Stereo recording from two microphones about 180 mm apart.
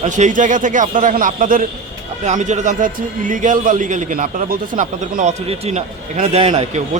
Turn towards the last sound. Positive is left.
turn(degrees=-35)  # may be behind; listen again after turning